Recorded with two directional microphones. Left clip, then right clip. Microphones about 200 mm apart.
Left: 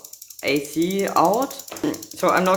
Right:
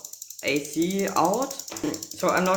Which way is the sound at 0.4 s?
25° left (ahead or behind).